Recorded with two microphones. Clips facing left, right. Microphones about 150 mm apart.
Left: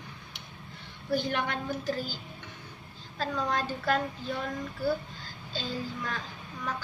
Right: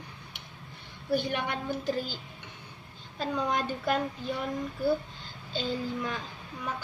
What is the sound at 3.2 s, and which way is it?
Speech, 20° right (ahead or behind).